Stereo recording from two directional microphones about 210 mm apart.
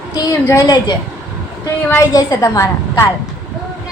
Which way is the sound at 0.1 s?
15° left (ahead or behind).